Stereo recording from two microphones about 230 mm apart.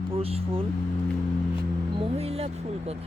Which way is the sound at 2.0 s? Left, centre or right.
Right.